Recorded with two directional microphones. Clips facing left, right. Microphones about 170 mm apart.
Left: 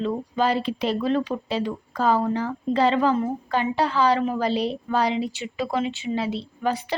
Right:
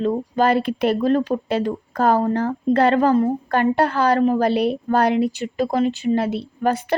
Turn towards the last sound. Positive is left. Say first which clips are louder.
# right 5 dB
turn(degrees=-55)  # may be behind; listen again after turning